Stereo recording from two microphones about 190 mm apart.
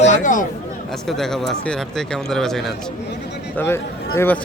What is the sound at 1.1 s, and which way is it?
Speech, centre (ahead or behind).